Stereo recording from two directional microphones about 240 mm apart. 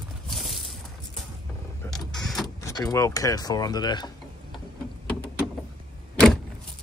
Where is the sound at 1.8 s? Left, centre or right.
Centre.